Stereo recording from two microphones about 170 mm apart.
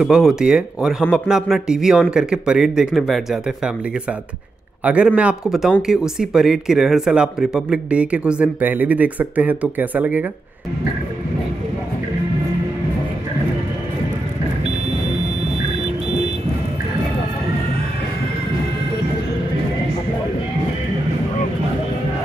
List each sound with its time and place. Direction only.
0.0 s speech: 5° right (ahead or behind)
4.8 s speech: 5° right (ahead or behind)